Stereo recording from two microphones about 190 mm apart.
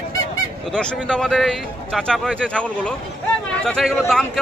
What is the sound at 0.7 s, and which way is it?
Speech, 5° left (ahead or behind).